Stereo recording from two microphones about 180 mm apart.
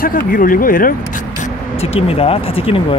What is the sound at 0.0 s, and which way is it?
Speech, 50° left (ahead or behind).